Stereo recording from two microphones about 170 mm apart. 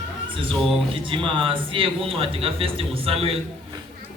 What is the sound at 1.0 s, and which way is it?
A man's voice, 30° right (ahead or behind).